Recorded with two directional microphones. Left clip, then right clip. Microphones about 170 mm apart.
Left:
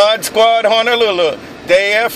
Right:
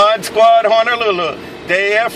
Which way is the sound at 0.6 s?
40° left (ahead or behind).